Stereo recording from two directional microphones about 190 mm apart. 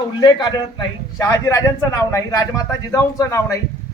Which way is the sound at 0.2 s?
20° left (ahead or behind).